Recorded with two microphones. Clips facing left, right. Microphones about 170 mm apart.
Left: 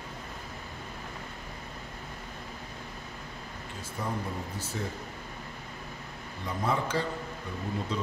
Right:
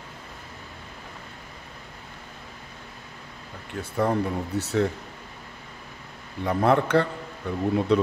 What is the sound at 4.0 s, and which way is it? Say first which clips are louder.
Speech: right 10 dB; 70° right (ahead or behind).